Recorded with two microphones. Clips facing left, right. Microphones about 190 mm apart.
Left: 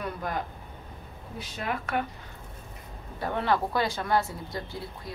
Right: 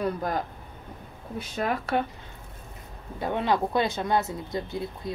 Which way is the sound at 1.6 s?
35° right (ahead or behind).